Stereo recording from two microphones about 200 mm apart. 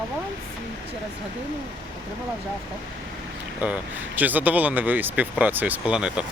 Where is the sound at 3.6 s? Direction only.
10° right (ahead or behind).